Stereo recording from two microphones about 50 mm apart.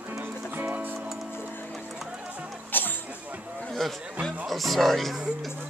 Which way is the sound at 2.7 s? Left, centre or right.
Left.